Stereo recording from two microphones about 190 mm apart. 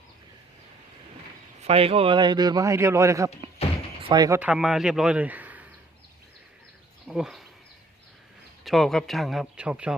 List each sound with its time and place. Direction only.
1.6 s a man's voice: 30° right (ahead or behind)
4.4 s a man's voice: 5° right (ahead or behind)
7.1 s a man's voice: centre (ahead or behind)
8.6 s a man's voice: centre (ahead or behind)